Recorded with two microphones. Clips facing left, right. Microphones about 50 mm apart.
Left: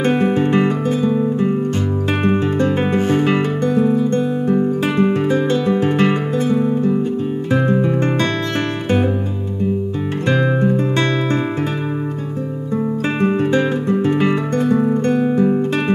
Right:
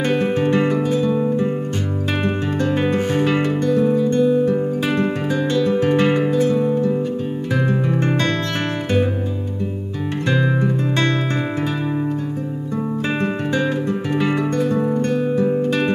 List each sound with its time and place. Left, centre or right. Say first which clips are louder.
0.1 s music: left 2 dB; left
2.2 s music: left 5 dB; left
4.8 s music: left 4 dB; left
7.5 s music: left 4 dB; centre
12.7 s music: left 3 dB; centre
14.0 s music: left 4 dB; left
14.7 s guitar: left 4 dB; centre
15.0 s music: left 3 dB; left